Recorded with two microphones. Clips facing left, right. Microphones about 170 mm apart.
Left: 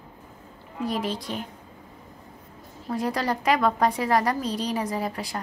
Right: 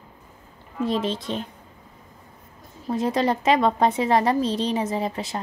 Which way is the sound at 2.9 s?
25° right (ahead or behind).